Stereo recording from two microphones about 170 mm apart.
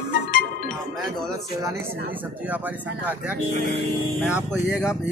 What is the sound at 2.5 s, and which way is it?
Speech, 10° right (ahead or behind).